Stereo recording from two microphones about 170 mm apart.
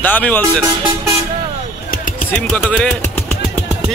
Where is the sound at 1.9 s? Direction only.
55° left (ahead or behind).